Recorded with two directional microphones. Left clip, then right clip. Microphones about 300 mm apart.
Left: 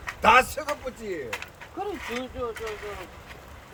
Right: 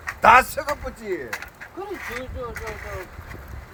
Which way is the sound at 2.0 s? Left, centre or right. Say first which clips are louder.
Right 1 dB; centre.